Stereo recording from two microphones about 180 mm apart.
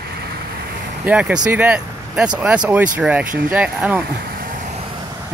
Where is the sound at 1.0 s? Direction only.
5° right (ahead or behind).